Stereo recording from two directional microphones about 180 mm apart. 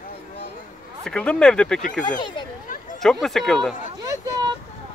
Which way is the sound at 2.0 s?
25° left (ahead or behind).